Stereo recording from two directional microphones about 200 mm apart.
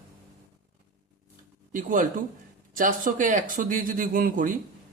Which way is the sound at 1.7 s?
40° right (ahead or behind).